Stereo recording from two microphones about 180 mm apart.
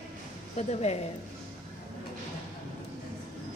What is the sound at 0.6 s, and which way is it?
Speech, 35° left (ahead or behind).